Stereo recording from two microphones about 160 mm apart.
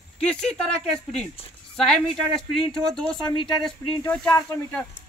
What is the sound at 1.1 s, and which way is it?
Speech, 40° left (ahead or behind).